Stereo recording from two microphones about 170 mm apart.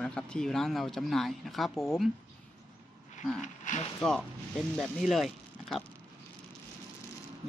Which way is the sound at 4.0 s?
5° left (ahead or behind).